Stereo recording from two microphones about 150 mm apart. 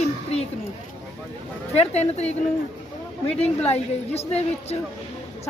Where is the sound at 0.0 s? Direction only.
45° left (ahead or behind).